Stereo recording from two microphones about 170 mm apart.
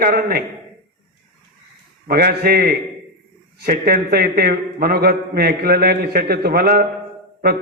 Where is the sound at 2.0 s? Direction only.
65° right (ahead or behind).